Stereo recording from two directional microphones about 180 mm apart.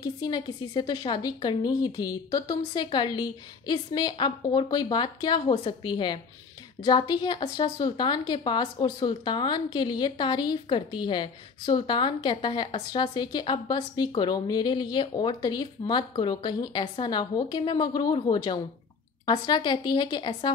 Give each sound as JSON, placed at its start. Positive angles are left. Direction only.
{"t": 0.0, "sound": "a woman's voice", "side_deg": 25}